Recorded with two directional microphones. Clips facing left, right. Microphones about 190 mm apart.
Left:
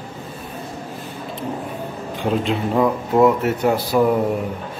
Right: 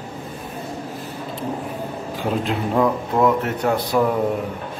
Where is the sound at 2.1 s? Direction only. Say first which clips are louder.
Left 3 dB; centre (ahead or behind).